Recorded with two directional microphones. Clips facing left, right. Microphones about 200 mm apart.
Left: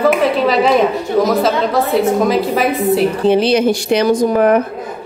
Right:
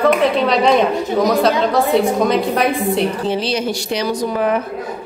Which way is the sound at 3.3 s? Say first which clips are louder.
Left 7 dB; 55° left (ahead or behind).